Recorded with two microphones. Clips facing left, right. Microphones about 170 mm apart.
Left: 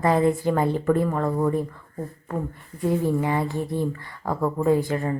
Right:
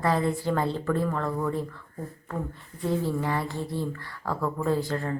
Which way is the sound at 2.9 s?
15° left (ahead or behind).